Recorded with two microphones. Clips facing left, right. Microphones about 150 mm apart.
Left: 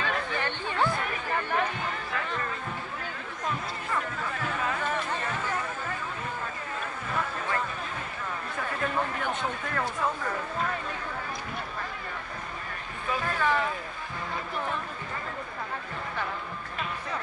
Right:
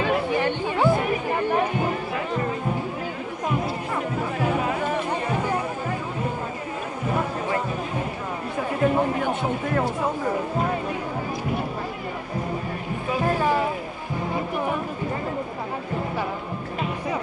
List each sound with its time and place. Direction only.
0.0 s chatter: 15° right (ahead or behind)
0.9 s music: 15° right (ahead or behind)
7.1 s a sound: 20° right (ahead or behind)
8.5 s chatter: 20° right (ahead or behind)
9.4 s music: 20° right (ahead or behind)
13.2 s a sound: 35° right (ahead or behind)
14.3 s music: 15° right (ahead or behind)